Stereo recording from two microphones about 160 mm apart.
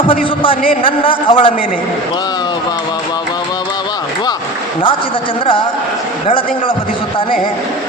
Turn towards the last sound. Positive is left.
turn(degrees=30)  # may be behind; listen again after turning